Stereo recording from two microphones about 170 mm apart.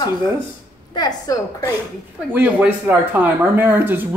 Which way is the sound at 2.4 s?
10° right (ahead or behind).